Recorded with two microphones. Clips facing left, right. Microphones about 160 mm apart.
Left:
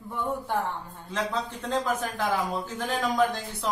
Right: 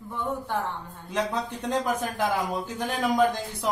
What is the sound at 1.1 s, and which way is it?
A man's voice, 15° right (ahead or behind).